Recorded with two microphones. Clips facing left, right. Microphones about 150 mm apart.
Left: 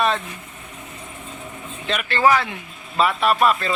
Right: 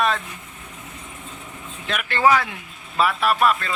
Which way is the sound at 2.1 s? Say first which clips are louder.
Even; 15° right (ahead or behind).